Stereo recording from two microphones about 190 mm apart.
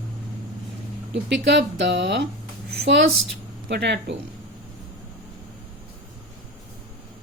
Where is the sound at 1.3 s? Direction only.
65° right (ahead or behind).